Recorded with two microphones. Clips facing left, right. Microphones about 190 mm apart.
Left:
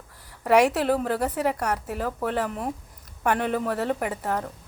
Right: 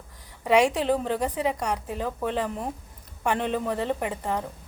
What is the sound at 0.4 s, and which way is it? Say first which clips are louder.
A woman's voice: left 1 dB; 10° left (ahead or behind).